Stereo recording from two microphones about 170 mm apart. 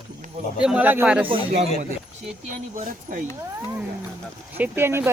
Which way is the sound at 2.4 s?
50° right (ahead or behind).